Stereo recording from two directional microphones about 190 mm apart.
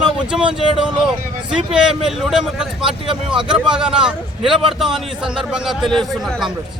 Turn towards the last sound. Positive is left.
turn(degrees=0)  # may be behind; listen again after turning